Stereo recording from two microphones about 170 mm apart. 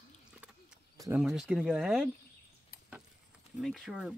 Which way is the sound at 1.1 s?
Centre (ahead or behind).